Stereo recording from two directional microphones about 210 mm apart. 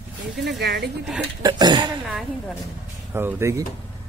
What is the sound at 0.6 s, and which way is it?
Speech, 50° right (ahead or behind).